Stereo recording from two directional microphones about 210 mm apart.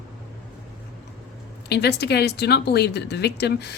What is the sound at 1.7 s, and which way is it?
Speech, 55° left (ahead or behind).